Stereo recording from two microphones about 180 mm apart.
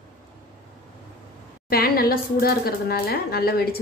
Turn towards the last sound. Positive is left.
turn(degrees=60)  # may be behind; listen again after turning